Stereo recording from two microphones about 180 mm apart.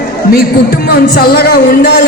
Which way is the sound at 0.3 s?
55° left (ahead or behind).